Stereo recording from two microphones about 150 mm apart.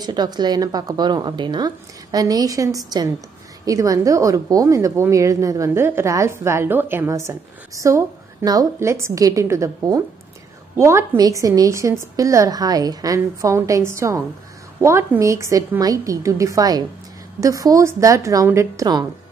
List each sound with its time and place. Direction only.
0.0 s a woman's voice: 25° right (ahead or behind)